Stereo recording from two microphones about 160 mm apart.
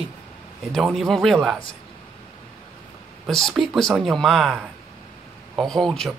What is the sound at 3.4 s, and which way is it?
Speech, centre (ahead or behind).